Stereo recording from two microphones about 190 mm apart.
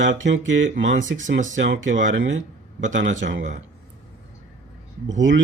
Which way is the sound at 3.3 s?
40° right (ahead or behind).